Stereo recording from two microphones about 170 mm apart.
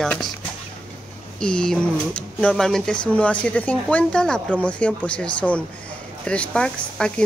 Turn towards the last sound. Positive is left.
turn(degrees=5)  # may be behind; listen again after turning